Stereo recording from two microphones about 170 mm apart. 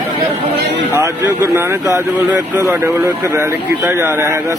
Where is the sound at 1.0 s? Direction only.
15° right (ahead or behind).